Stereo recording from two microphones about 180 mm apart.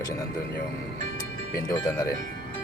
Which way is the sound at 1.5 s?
20° left (ahead or behind).